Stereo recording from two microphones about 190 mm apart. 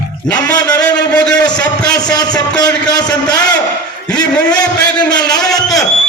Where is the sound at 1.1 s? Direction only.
5° left (ahead or behind).